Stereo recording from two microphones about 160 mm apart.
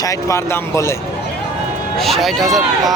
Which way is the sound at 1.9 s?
Centre (ahead or behind).